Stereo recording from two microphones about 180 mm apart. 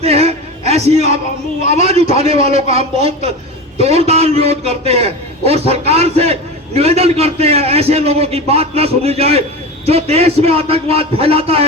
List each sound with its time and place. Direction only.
0.0 s music: 35° right (ahead or behind)
1.7 s a man's voice: 35° right (ahead or behind)